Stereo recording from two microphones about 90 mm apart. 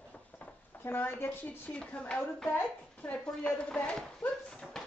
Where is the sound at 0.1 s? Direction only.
20° left (ahead or behind).